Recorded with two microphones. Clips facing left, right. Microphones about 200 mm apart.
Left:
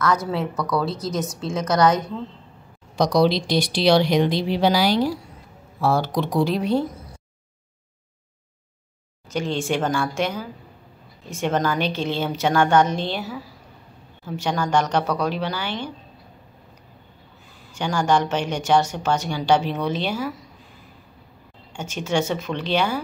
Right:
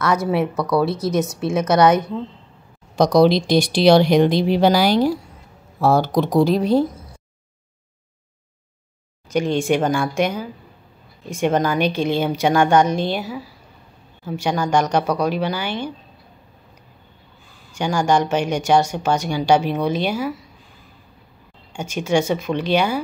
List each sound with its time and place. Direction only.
0.6 s a woman's voice: 30° right (ahead or behind)
3.0 s speech: 50° right (ahead or behind)
9.3 s a woman's voice: 15° right (ahead or behind)
17.7 s a woman's voice: 15° right (ahead or behind)
21.7 s a woman's voice: 10° right (ahead or behind)